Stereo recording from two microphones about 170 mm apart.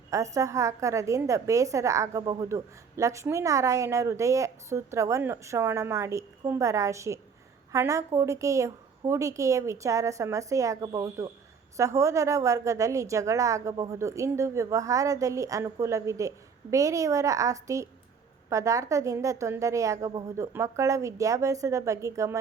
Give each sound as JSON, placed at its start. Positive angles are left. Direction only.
{"t": 0.1, "sound": "a woman's voice", "side_deg": -20}